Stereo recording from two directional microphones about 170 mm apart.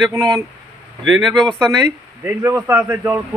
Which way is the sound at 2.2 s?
15° right (ahead or behind).